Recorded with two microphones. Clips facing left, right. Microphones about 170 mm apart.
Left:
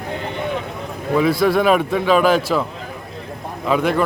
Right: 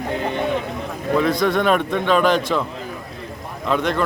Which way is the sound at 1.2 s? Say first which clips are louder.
Left 3 dB; 5° left (ahead or behind).